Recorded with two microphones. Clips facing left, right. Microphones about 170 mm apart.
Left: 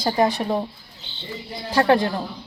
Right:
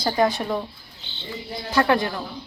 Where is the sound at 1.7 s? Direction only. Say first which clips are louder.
Left 3 dB; 30° left (ahead or behind).